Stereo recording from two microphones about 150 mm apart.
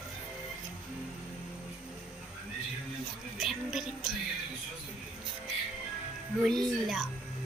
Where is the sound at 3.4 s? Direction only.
Centre (ahead or behind).